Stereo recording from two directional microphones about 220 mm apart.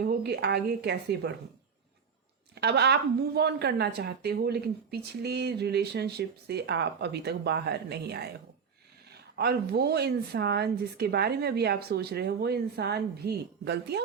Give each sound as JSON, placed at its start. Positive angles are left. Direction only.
{"t": 0.0, "sound": "a woman's voice", "side_deg": -45}
{"t": 2.6, "sound": "a woman's voice", "side_deg": -50}
{"t": 9.3, "sound": "a woman's voice", "side_deg": -45}